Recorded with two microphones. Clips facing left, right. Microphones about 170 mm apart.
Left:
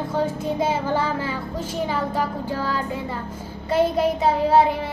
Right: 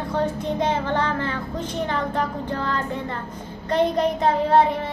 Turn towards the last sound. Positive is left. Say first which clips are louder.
# even
turn(degrees=0)  # may be behind; listen again after turning